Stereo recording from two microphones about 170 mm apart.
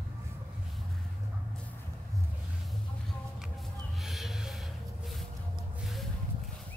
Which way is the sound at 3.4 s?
Centre (ahead or behind).